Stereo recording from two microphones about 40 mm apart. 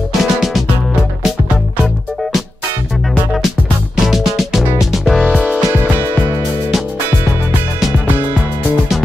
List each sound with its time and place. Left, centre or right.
0.2 s music: centre
4.0 s music: centre
5.2 s music: right